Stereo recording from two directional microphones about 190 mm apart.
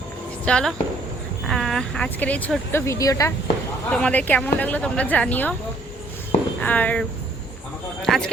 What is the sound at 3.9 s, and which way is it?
Speech, 5° left (ahead or behind).